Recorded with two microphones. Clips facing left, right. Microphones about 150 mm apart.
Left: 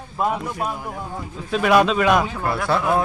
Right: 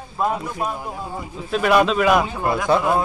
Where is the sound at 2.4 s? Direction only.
15° right (ahead or behind).